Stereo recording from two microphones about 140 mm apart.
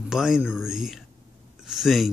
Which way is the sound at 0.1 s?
5° right (ahead or behind).